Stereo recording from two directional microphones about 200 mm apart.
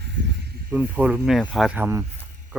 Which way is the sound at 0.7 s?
10° right (ahead or behind).